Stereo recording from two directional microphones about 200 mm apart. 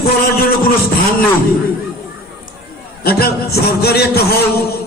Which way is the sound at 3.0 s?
50° left (ahead or behind).